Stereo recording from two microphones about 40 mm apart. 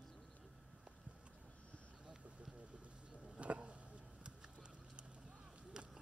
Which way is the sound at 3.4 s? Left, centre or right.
Right.